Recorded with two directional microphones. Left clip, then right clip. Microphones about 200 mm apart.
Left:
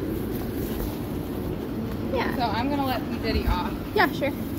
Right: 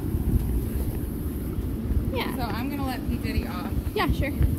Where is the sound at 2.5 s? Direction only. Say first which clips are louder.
Left 5 dB; 50° right (ahead or behind).